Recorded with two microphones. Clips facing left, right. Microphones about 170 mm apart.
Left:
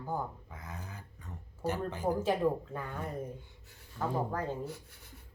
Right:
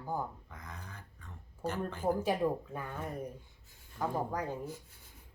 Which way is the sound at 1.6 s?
10° left (ahead or behind).